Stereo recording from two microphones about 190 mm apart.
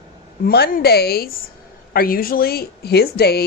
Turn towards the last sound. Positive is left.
turn(degrees=55)  # may be behind; listen again after turning